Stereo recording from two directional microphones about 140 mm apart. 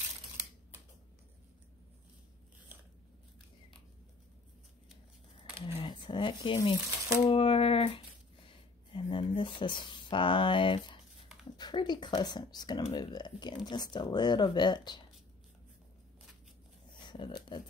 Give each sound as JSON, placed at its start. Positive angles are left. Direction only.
{"t": 5.6, "sound": "speech", "side_deg": 40}
{"t": 17.0, "sound": "speech", "side_deg": 30}